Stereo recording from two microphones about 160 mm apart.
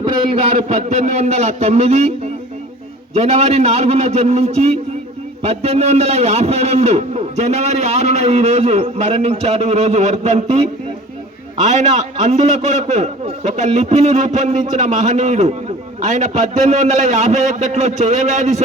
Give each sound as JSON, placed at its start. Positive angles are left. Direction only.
{"t": 0.0, "sound": "a man's voice", "side_deg": -40}
{"t": 3.2, "sound": "a man's voice", "side_deg": -40}